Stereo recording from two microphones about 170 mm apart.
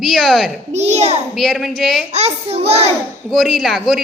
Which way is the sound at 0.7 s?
40° right (ahead or behind).